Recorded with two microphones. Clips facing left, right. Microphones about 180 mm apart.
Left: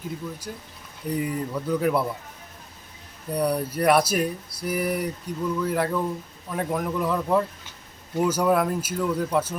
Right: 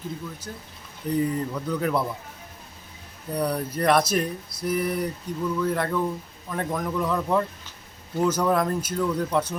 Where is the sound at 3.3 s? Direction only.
10° left (ahead or behind).